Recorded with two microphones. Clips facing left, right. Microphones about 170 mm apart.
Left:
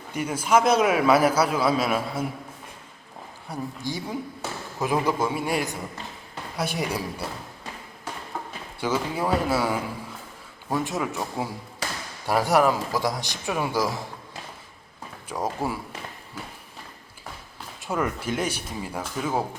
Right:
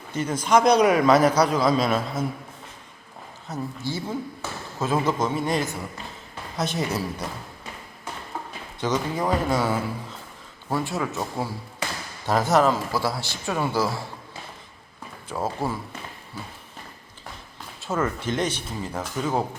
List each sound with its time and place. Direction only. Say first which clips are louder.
0.1 s a man's voice: right 1 dB; 10° left (ahead or behind)
3.5 s a man's voice: right 1 dB; 15° left (ahead or behind)
8.8 s a man's voice: right 1 dB; 10° left (ahead or behind)
15.3 s a man's voice: right 1 dB; 15° left (ahead or behind)
17.7 s a man's voice: right 1 dB; 15° left (ahead or behind)